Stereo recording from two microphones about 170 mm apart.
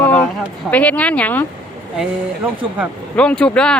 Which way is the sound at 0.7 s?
10° left (ahead or behind).